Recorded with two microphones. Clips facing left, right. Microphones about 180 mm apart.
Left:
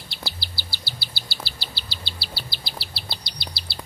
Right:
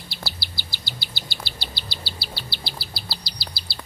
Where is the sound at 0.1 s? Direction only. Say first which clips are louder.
Left 1 dB; 10° right (ahead or behind).